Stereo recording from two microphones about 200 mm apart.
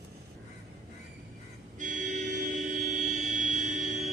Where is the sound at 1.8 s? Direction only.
40° right (ahead or behind).